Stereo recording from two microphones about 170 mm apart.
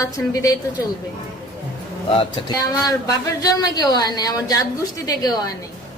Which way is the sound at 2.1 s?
25° left (ahead or behind).